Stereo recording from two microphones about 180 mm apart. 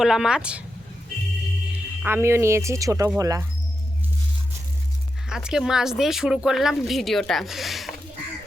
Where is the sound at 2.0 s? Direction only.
10° right (ahead or behind).